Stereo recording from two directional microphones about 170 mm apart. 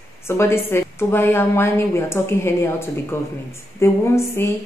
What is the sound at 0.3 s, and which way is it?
Speech, 15° left (ahead or behind).